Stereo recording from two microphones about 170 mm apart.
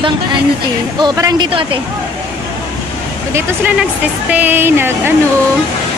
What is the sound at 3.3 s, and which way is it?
Speech, 10° right (ahead or behind).